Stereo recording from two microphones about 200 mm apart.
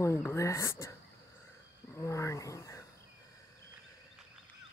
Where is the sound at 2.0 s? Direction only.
15° left (ahead or behind).